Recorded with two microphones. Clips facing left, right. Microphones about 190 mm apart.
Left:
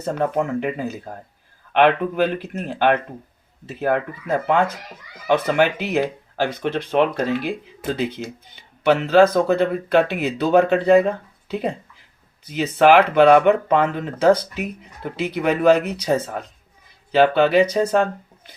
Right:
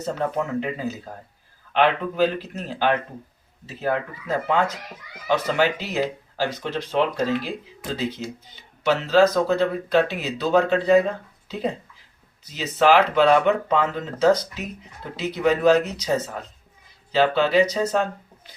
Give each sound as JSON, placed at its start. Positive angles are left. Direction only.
{"t": 0.1, "sound": "speech", "side_deg": 55}